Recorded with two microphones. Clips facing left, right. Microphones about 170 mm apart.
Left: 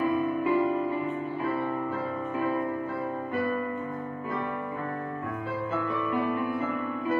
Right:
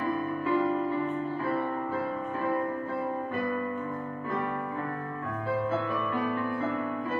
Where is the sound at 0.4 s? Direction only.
15° left (ahead or behind).